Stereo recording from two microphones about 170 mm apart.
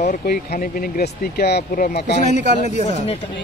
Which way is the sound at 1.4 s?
70° left (ahead or behind).